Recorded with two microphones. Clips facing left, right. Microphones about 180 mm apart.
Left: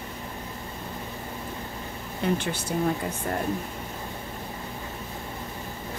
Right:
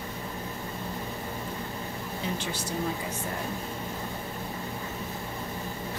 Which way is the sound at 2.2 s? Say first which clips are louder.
Left 8 dB; 60° left (ahead or behind).